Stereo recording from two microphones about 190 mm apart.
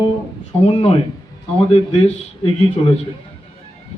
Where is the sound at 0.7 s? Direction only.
30° left (ahead or behind).